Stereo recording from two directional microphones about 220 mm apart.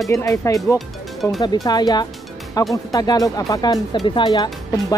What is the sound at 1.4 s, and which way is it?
Speech, 15° left (ahead or behind).